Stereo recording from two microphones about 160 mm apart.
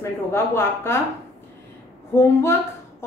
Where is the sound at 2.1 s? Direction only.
15° left (ahead or behind).